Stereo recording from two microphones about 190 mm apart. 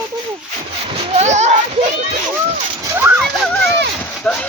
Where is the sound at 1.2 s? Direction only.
35° right (ahead or behind).